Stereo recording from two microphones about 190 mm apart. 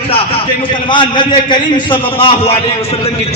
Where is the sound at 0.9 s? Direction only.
25° left (ahead or behind).